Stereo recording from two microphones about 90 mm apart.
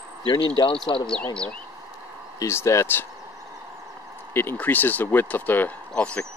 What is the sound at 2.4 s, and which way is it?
Speech, 30° left (ahead or behind).